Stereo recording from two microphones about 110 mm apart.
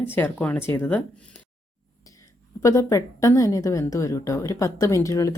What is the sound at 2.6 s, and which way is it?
A woman's voice, 30° left (ahead or behind).